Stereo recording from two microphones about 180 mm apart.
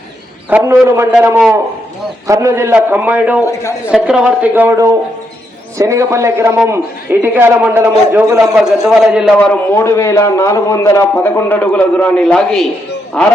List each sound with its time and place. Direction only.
0.5 s a man's voice: 15° right (ahead or behind)
3.4 s a man's voice: 15° left (ahead or behind)
3.8 s a man's voice: 5° right (ahead or behind)
8.5 s a man's voice: centre (ahead or behind)